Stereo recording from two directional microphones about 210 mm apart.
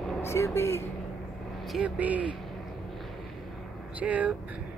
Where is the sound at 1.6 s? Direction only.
Centre (ahead or behind).